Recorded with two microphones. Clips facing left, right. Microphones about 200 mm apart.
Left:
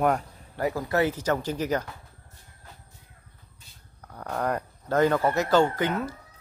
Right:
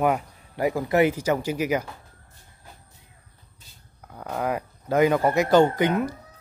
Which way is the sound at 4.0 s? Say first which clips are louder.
Right 1 dB; 5° right (ahead or behind).